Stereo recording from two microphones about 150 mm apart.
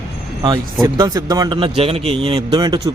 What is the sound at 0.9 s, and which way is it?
A man's voice, 25° right (ahead or behind).